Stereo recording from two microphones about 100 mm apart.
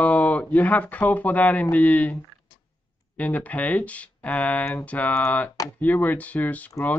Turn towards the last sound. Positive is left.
turn(degrees=15)  # may be behind; listen again after turning